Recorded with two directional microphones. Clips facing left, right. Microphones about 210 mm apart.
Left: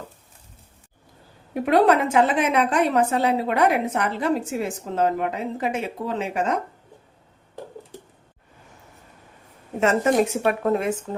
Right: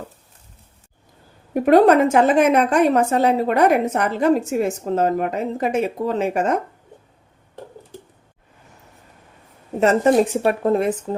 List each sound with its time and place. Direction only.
1.5 s a woman's voice: 45° right (ahead or behind)
9.8 s speech: 35° right (ahead or behind)